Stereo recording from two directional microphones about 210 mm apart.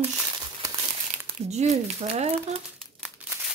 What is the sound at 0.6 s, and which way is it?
Crumpling, 15° right (ahead or behind).